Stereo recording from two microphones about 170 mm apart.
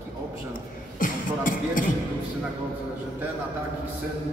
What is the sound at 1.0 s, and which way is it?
Beatboxing, 50° left (ahead or behind).